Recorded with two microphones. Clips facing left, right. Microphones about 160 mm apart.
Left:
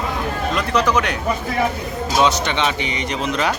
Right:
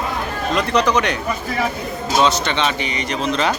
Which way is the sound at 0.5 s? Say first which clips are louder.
Right 2 dB; 5° left (ahead or behind).